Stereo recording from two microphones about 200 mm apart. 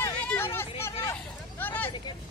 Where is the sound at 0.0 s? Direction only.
10° left (ahead or behind).